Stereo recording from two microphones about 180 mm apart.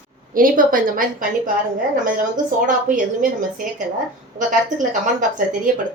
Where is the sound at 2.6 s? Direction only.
45° right (ahead or behind).